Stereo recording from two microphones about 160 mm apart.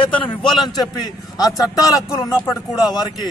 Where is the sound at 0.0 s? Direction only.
30° left (ahead or behind).